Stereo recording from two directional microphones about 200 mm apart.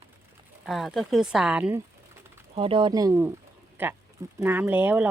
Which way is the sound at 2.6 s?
25° right (ahead or behind).